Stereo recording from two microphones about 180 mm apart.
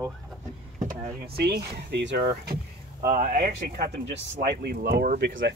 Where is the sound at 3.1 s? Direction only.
45° right (ahead or behind).